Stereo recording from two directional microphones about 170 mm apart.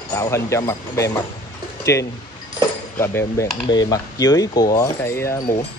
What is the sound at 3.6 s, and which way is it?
Speech, 25° left (ahead or behind).